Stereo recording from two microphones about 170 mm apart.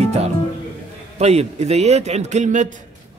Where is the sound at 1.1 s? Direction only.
40° right (ahead or behind).